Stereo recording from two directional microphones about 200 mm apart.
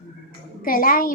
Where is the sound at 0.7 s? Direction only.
45° left (ahead or behind).